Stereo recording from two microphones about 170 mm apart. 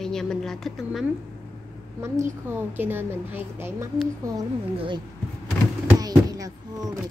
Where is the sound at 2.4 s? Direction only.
10° right (ahead or behind).